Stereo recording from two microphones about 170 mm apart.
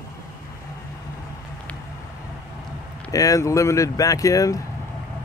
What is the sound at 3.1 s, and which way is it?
Speech, 20° left (ahead or behind).